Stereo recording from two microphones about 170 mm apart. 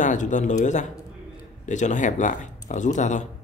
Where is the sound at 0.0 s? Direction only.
45° left (ahead or behind).